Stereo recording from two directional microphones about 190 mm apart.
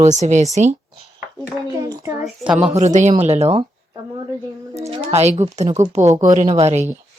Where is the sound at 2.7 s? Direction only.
40° right (ahead or behind).